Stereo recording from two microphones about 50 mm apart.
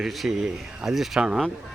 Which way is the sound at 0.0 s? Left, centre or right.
Centre.